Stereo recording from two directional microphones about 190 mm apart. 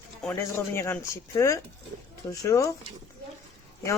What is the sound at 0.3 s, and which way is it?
Speech, 15° left (ahead or behind).